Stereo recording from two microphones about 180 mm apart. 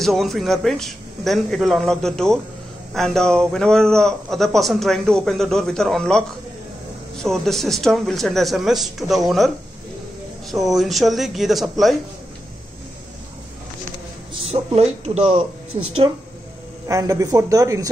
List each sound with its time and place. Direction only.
0.0 s a man's voice: centre (ahead or behind)
7.2 s a man's voice: centre (ahead or behind)
10.5 s a man's voice: centre (ahead or behind)
14.4 s speech: 35° right (ahead or behind)
16.8 s a man's voice: 20° right (ahead or behind)